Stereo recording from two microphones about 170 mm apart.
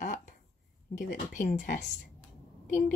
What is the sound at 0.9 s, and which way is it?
Speech, 45° left (ahead or behind).